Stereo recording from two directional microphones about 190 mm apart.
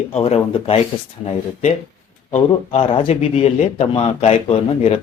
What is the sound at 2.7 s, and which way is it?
Speech, 30° left (ahead or behind).